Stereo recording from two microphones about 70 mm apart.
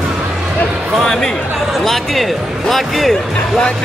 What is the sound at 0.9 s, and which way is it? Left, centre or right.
Speech, centre.